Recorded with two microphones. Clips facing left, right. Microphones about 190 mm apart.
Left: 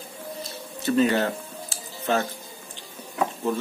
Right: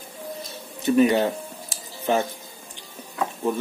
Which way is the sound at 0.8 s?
15° right (ahead or behind).